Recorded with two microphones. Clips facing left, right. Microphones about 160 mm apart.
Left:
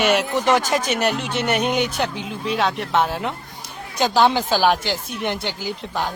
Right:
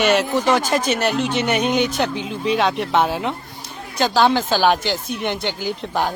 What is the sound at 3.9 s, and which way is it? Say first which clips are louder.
Speech: right 1 dB; 15° left (ahead or behind).